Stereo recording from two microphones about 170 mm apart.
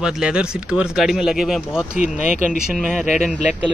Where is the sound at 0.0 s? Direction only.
5° right (ahead or behind).